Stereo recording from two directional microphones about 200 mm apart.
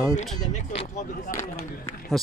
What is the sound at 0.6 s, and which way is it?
Speech, 35° left (ahead or behind).